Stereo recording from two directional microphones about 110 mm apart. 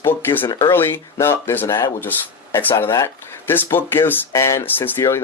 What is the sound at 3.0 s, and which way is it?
Speech, 20° left (ahead or behind).